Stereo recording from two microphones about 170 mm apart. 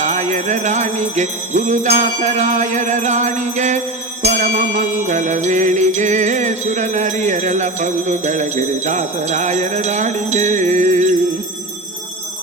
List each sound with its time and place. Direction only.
0.0 s jingle bell: 45° right (ahead or behind)